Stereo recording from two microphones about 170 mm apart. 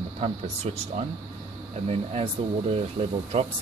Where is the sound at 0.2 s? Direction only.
40° right (ahead or behind).